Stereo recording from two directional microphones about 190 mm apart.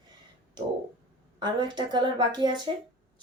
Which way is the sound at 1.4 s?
25° right (ahead or behind).